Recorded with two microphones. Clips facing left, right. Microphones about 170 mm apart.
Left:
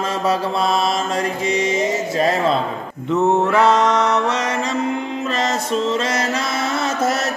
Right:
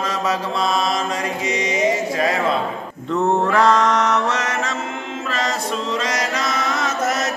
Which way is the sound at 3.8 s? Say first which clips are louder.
Left 1 dB; 10° left (ahead or behind).